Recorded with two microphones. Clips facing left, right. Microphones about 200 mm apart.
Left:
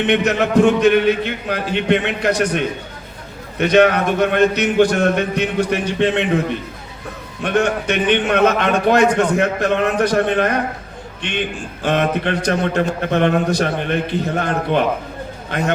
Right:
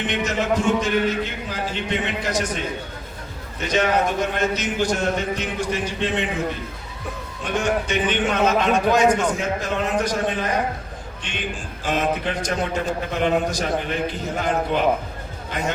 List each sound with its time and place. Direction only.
0.1 s a man's voice: 65° left (ahead or behind)
7.4 s a man's voice: 65° left (ahead or behind)